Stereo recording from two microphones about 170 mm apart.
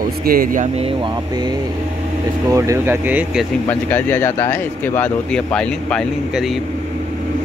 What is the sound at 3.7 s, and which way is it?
Speech, 15° left (ahead or behind).